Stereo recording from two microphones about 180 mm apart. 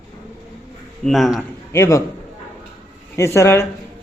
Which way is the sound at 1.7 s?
15° left (ahead or behind).